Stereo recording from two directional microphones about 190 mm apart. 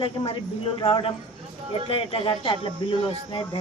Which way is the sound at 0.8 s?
25° left (ahead or behind).